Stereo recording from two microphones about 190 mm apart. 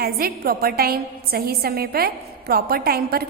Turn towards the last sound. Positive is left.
turn(degrees=-55)  # may be behind; listen again after turning